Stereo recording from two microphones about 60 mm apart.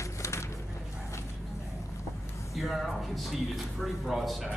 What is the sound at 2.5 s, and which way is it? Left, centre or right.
Speech, centre.